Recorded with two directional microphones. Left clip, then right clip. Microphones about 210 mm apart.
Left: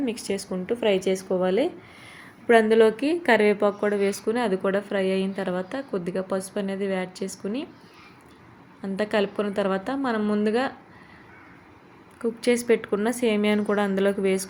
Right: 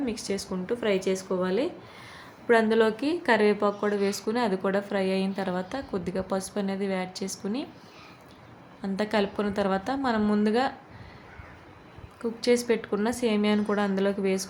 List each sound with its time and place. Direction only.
0.1 s a woman's voice: 15° left (ahead or behind)
8.8 s a woman's voice: 5° left (ahead or behind)
12.2 s a woman's voice: 10° left (ahead or behind)